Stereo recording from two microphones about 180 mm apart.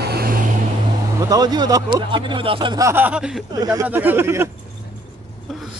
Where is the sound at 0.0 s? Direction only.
60° right (ahead or behind).